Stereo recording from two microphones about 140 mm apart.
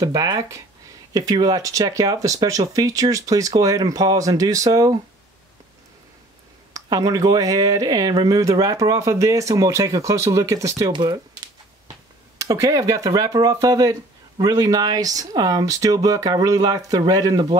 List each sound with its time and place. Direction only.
0.0 s speech: 25° right (ahead or behind)
6.7 s speech: 25° right (ahead or behind)
10.9 s speech: 35° right (ahead or behind)
12.4 s speech: 25° right (ahead or behind)